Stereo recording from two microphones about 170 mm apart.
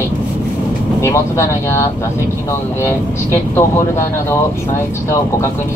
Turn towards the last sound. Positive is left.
turn(degrees=15)  # may be behind; listen again after turning